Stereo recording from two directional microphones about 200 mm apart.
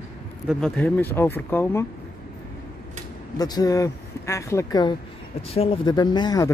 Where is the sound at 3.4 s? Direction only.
20° left (ahead or behind).